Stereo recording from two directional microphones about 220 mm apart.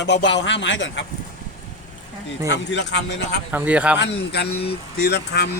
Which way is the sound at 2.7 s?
50° left (ahead or behind).